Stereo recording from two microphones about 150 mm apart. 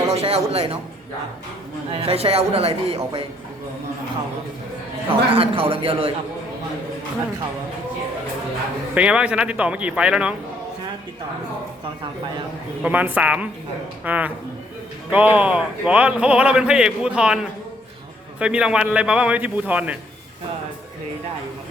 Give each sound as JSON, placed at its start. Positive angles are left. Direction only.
{"t": 0.1, "sound": "a man's voice", "side_deg": -40}
{"t": 1.9, "sound": "a man's voice", "side_deg": -40}
{"t": 5.0, "sound": "a man's voice", "side_deg": -40}
{"t": 9.0, "sound": "a man's voice", "side_deg": -5}
{"t": 12.8, "sound": "a man's voice", "side_deg": -10}